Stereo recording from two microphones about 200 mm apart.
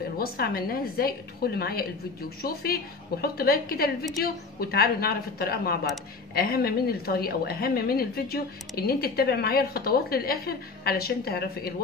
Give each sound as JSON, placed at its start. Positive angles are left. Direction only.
{"t": 0.2, "sound": "a woman's voice", "side_deg": 50}